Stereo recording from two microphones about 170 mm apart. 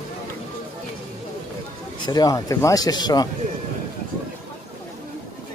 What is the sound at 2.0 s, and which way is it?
Speech, 25° left (ahead or behind).